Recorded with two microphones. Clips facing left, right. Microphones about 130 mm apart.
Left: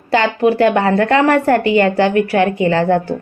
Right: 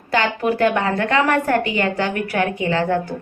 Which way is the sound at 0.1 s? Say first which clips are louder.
Left 6 dB; 30° left (ahead or behind).